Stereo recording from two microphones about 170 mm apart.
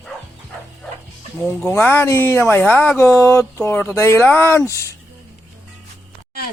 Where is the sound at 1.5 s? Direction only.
10° left (ahead or behind).